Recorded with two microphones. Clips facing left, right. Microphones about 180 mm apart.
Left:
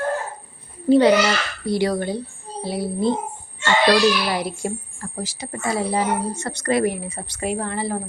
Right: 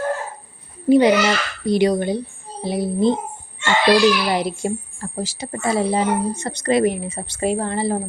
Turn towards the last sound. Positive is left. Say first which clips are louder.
# right 4 dB
turn(degrees=-30)  # may be behind; listen again after turning